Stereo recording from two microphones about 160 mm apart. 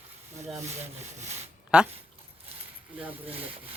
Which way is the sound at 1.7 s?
5° right (ahead or behind).